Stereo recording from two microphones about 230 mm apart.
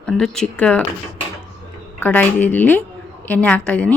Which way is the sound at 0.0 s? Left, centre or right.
Centre.